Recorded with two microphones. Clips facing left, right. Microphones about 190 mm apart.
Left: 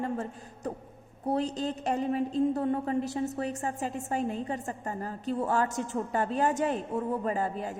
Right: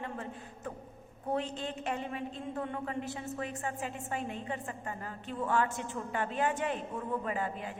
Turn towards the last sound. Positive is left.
turn(degrees=40)  # may be behind; listen again after turning